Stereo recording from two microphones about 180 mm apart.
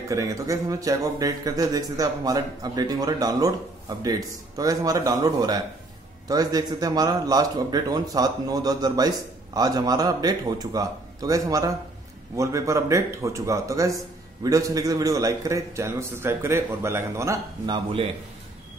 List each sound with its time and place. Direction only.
0.1 s a man's voice: 15° right (ahead or behind)